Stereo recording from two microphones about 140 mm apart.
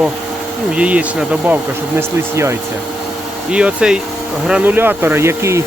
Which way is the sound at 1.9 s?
20° right (ahead or behind).